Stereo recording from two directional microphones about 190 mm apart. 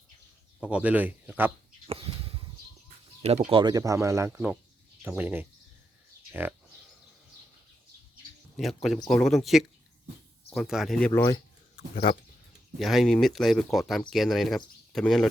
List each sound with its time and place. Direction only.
0.6 s speech: 5° right (ahead or behind)
1.9 s a sound: 30° right (ahead or behind)
3.2 s speech: 35° right (ahead or behind); by 5.5 s 10° right (ahead or behind)
8.5 s speech: centre (ahead or behind)
11.1 s speech: 10° left (ahead or behind)
12.8 s speech: centre (ahead or behind)